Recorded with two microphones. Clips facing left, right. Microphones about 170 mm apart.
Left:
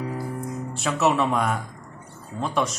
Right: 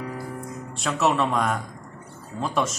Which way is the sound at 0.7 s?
Centre (ahead or behind).